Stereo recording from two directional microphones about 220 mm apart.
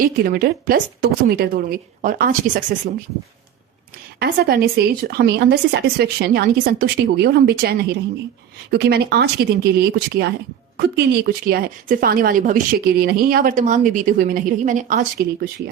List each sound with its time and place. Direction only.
0.0 s speech: 40° right (ahead or behind)
4.2 s speech: 45° right (ahead or behind)